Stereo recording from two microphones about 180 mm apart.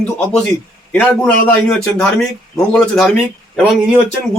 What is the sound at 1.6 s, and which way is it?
A man's voice, 5° left (ahead or behind).